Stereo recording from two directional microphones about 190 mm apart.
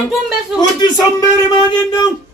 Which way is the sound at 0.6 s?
20° left (ahead or behind).